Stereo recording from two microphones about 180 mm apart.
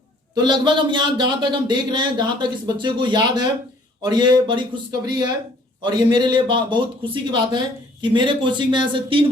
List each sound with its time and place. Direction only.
0.3 s speech: 25° right (ahead or behind)